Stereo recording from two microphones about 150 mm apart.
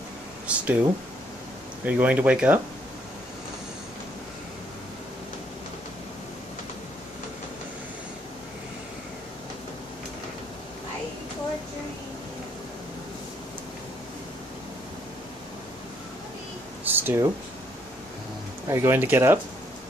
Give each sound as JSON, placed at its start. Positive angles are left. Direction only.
{"t": 0.5, "sound": "speech", "side_deg": -10}
{"t": 1.9, "sound": "speech", "side_deg": -10}
{"t": 16.8, "sound": "a sound", "side_deg": -15}
{"t": 18.7, "sound": "speech", "side_deg": -15}